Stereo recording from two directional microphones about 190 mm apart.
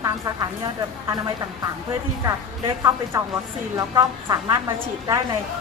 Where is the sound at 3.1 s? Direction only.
15° right (ahead or behind).